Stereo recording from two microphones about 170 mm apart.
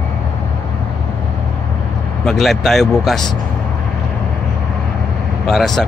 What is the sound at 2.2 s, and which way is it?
Speech, centre (ahead or behind).